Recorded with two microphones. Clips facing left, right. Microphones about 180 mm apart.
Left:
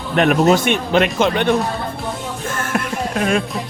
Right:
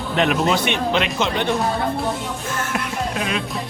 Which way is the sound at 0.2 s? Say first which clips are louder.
Left 5 dB; 50° left (ahead or behind).